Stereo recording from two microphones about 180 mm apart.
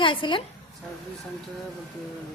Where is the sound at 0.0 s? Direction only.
25° left (ahead or behind).